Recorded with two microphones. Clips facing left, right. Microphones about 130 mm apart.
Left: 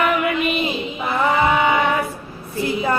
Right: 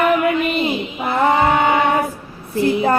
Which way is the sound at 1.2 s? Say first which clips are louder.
Right 2 dB; 50° right (ahead or behind).